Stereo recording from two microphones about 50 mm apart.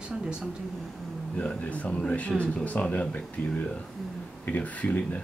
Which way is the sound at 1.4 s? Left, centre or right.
Left.